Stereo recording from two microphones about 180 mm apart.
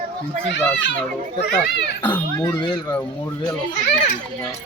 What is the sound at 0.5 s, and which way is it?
Speech, 80° left.